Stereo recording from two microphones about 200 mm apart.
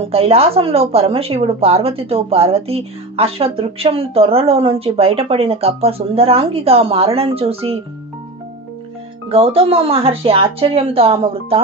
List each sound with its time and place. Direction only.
0.1 s a woman's voice: 30° right (ahead or behind)
9.3 s a woman's voice: 30° right (ahead or behind)